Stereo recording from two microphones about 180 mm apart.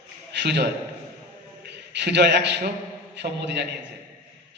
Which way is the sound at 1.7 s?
70° right (ahead or behind).